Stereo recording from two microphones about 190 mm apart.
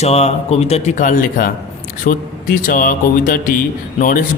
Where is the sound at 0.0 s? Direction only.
35° left (ahead or behind).